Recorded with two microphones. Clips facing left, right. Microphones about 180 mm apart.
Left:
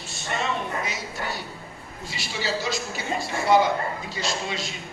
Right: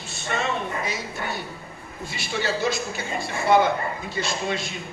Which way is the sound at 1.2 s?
55° right (ahead or behind).